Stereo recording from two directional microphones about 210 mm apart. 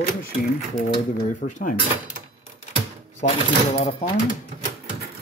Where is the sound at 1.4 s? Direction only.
55° left (ahead or behind).